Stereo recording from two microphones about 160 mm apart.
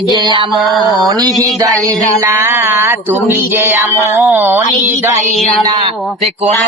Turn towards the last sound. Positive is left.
turn(degrees=-30)  # may be behind; listen again after turning